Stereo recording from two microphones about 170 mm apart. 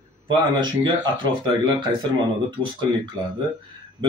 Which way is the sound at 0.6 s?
25° right (ahead or behind).